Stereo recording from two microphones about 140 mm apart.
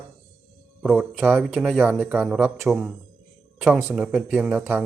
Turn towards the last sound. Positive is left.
turn(degrees=-10)  # may be behind; listen again after turning